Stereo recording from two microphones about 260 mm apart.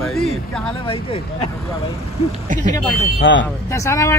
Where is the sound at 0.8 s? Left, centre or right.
Left.